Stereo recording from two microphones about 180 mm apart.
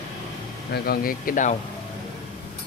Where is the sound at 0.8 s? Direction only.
50° left (ahead or behind).